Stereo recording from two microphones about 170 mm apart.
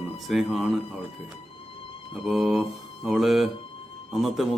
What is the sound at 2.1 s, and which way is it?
Speech, centre (ahead or behind).